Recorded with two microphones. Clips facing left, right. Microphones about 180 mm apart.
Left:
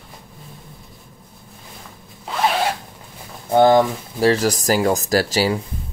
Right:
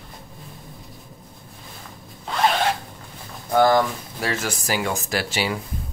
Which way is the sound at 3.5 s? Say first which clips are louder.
Left 4 dB; 25° left (ahead or behind).